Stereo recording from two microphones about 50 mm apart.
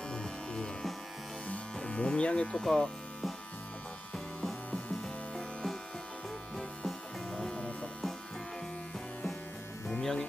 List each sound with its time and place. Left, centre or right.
0.1 s music: centre
1.8 s speech: left
6.5 s music: centre
7.3 s music: centre
9.9 s music: centre